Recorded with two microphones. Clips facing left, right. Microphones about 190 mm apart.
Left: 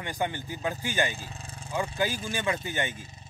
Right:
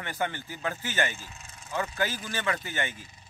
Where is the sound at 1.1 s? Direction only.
35° left (ahead or behind).